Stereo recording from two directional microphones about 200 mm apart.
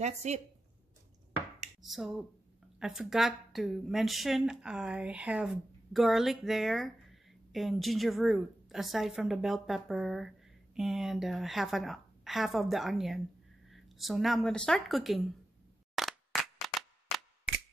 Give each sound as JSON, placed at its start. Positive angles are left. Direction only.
{"t": 0.0, "sound": "speech", "side_deg": -35}
{"t": 1.8, "sound": "a woman's voice", "side_deg": 0}
{"t": 15.9, "sound": "a sound", "side_deg": 0}